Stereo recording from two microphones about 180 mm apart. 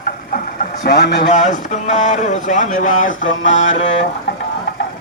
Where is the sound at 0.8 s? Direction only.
70° left (ahead or behind).